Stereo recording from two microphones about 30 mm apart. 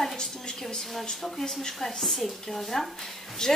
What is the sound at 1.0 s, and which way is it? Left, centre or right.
Speech, left.